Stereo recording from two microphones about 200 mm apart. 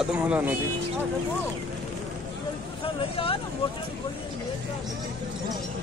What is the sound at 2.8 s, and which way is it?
Speech, 30° left (ahead or behind).